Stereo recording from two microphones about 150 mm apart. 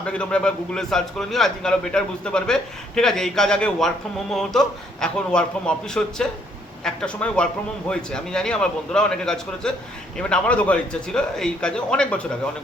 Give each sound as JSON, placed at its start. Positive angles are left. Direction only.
{"t": 0.0, "sound": "a man's voice", "side_deg": 5}